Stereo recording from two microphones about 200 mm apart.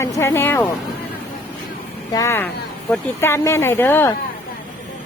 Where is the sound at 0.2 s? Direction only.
10° left (ahead or behind).